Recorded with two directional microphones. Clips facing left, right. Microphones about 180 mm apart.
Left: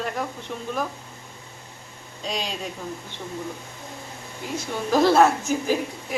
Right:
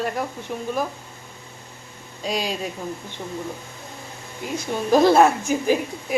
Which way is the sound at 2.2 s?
10° right (ahead or behind).